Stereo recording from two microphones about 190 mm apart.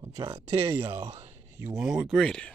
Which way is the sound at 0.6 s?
10° right (ahead or behind).